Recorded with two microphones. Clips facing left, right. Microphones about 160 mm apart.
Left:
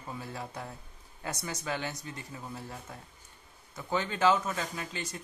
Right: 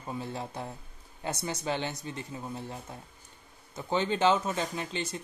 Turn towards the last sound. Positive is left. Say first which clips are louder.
# right 4 dB
turn(degrees=-25)  # may be behind; listen again after turning